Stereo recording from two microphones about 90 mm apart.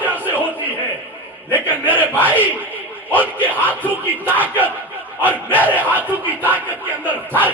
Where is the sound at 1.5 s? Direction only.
20° right (ahead or behind).